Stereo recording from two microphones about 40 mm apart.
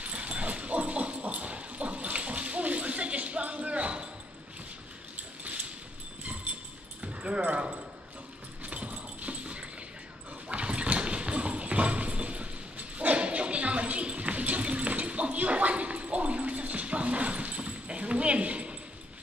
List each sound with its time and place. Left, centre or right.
0.0 s dog: right
5.1 s a sound: right
7.0 s dog: right
8.6 s dog: right
10.5 s clip-clop: right